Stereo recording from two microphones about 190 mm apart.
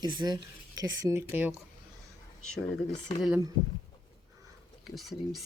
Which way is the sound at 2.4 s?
5° left (ahead or behind).